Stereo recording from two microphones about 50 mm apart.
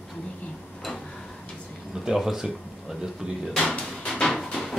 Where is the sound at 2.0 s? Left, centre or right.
Centre.